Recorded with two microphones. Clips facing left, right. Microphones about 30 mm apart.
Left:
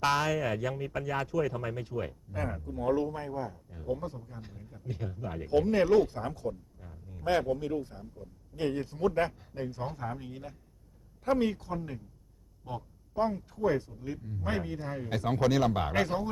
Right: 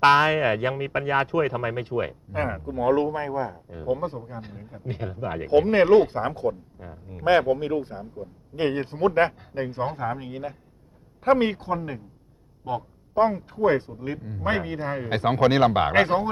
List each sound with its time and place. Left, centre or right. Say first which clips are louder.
0.0 s speech: right 10 dB; right